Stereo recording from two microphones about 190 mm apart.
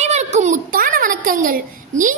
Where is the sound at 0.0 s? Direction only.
35° right (ahead or behind).